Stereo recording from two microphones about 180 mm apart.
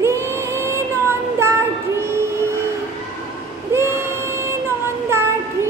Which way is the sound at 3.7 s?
15° right (ahead or behind).